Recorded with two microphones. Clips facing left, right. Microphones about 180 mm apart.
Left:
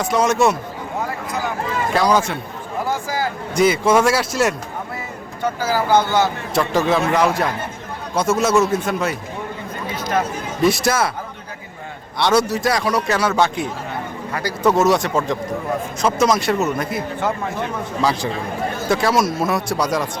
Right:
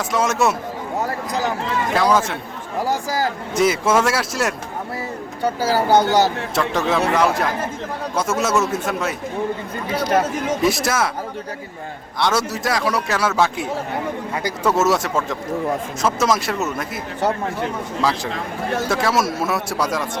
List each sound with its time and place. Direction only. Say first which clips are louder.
0.0 s speech: left 3 dB; centre (ahead or behind)
2.0 s speech: left 1 dB; centre (ahead or behind)
2.8 s a sound: right 1 dB; 40° right (ahead or behind)
3.5 s speech: left 3 dB; centre (ahead or behind)
5.9 s speech: right 1 dB; 40° right (ahead or behind)
6.5 s speech: left 2 dB; centre (ahead or behind)
10.6 s speech: left 5 dB; centre (ahead or behind)
12.2 s speech: left 4 dB; centre (ahead or behind)
18.0 s speech: left 2 dB; centre (ahead or behind)